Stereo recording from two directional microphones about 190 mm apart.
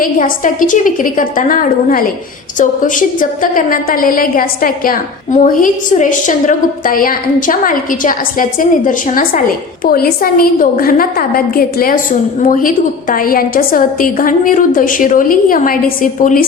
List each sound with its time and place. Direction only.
0.0 s a woman's voice: 45° left (ahead or behind)